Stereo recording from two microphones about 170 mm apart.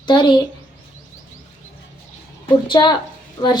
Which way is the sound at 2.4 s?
25° left (ahead or behind).